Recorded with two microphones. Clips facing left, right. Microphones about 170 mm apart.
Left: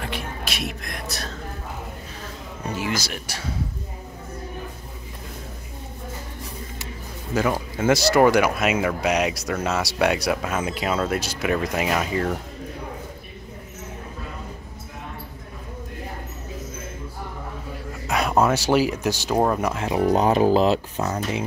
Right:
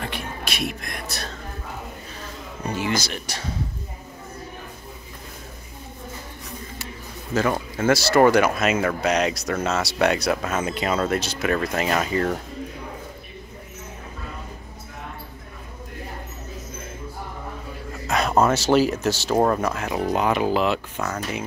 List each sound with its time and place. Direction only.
0.0 s whispering: centre (ahead or behind)
2.7 s speech: 5° left (ahead or behind)
7.3 s speech: 10° left (ahead or behind)
18.0 s a sound: 10° left (ahead or behind)
18.5 s speech: 10° left (ahead or behind)
19.7 s speech: 25° left (ahead or behind)
21.0 s speech: 20° left (ahead or behind)